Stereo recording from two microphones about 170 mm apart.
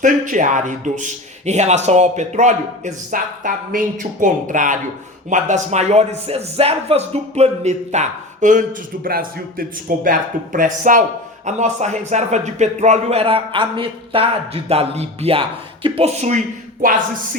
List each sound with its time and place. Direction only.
0.0 s a man's voice: 50° right (ahead or behind)